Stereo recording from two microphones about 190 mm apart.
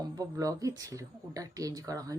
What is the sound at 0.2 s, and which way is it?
Speech, 20° right (ahead or behind).